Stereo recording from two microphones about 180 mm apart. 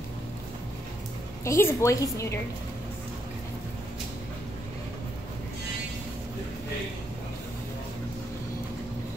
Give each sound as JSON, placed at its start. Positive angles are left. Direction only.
{"t": 1.4, "sound": "a woman's voice", "side_deg": 15}